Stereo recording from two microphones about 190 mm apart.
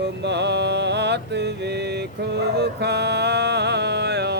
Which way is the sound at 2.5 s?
60° right (ahead or behind).